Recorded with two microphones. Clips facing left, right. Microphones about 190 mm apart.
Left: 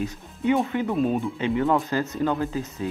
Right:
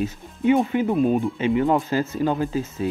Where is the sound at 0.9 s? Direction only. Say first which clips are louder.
Right 4 dB; centre (ahead or behind).